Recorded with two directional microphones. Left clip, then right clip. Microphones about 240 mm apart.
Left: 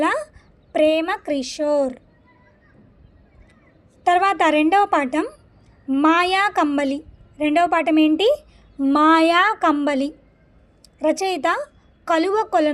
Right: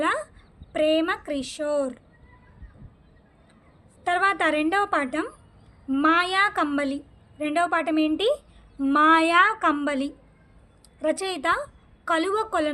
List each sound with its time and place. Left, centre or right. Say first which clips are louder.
0.0 s a child's voice: left 4 dB; centre
4.0 s a woman's voice: left 6 dB; left